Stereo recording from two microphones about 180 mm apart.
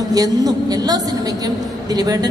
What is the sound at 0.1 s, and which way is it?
A woman's voice, 20° right (ahead or behind).